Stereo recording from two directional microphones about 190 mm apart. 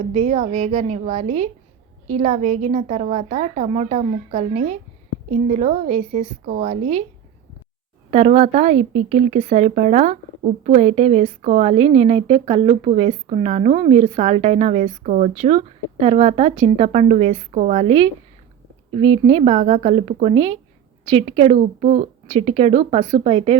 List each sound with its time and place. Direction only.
0.0 s speech: 35° right (ahead or behind)
8.1 s speech: 35° right (ahead or behind)